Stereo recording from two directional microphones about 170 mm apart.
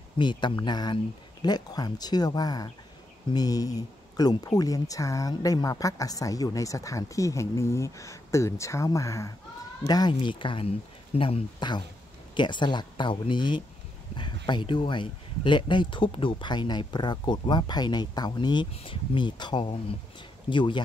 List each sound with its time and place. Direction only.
0.2 s speech: 25° left (ahead or behind)